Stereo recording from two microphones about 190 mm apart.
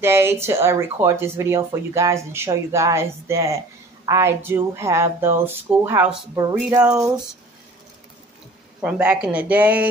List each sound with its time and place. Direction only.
0.0 s speech: 10° right (ahead or behind)
8.8 s speech: 5° right (ahead or behind)